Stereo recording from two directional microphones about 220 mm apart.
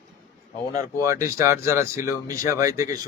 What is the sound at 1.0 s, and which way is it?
A man's voice, 15° right (ahead or behind).